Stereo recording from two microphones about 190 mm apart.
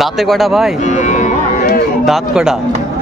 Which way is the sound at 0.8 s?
40° left (ahead or behind).